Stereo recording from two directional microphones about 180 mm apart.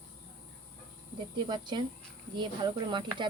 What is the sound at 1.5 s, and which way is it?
Speech, 25° right (ahead or behind).